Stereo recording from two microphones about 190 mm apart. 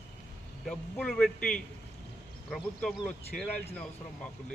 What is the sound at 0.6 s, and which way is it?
A man's voice, 5° left (ahead or behind).